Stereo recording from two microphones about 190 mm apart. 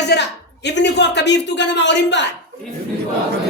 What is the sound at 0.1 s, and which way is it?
Speech, 65° left (ahead or behind).